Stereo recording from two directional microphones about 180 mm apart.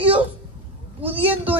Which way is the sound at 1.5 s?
10° right (ahead or behind).